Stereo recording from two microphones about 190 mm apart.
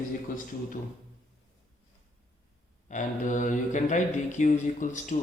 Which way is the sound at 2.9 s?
40° left (ahead or behind).